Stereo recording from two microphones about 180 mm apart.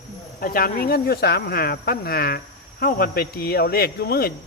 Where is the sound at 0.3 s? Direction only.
55° left (ahead or behind).